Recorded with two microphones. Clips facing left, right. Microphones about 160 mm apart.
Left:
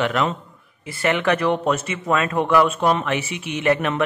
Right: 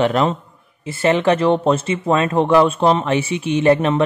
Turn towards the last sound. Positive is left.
turn(degrees=-30)  # may be behind; listen again after turning